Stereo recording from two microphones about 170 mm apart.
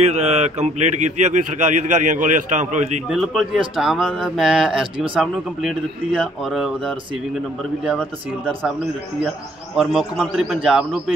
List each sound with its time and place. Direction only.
0.0 s a man's voice: 40° right (ahead or behind)
3.1 s a man's voice: centre (ahead or behind)
9.8 s a man's voice: centre (ahead or behind)